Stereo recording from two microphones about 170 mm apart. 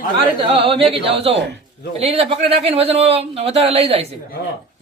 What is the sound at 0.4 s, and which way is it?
A man's voice, 30° right (ahead or behind).